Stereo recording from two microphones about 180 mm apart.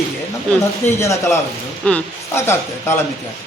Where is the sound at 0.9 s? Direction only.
15° left (ahead or behind).